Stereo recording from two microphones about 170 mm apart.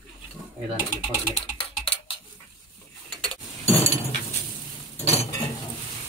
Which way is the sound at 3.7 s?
35° left (ahead or behind).